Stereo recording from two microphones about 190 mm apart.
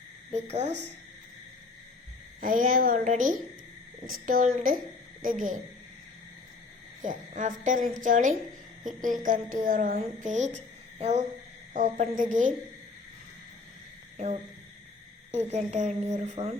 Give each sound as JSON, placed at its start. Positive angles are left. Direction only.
{"t": 0.3, "sound": "a woman's voice", "side_deg": -35}
{"t": 2.4, "sound": "a woman's voice", "side_deg": -45}
{"t": 7.0, "sound": "a woman's voice", "side_deg": -40}
{"t": 14.2, "sound": "a woman's voice", "side_deg": -35}